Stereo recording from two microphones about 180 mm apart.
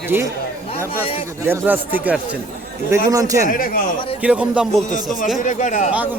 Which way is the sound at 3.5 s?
50° left (ahead or behind).